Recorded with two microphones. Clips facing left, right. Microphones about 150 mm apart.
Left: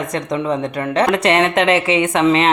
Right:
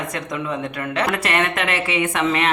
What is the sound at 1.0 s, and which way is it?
A woman's voice, 25° left (ahead or behind).